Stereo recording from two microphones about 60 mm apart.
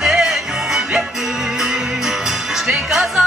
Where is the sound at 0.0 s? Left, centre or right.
Centre.